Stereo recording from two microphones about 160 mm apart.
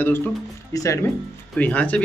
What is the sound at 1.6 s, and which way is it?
Speech, 10° left (ahead or behind).